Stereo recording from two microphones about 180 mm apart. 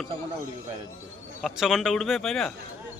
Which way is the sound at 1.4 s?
Centre (ahead or behind).